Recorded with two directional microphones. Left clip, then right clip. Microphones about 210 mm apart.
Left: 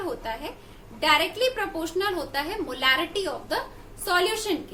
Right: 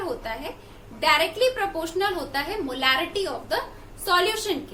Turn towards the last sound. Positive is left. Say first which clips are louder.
# right 2 dB
turn(degrees=15)  # may be behind; listen again after turning